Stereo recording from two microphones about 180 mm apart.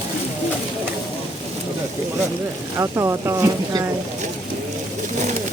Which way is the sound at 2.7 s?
15° right (ahead or behind).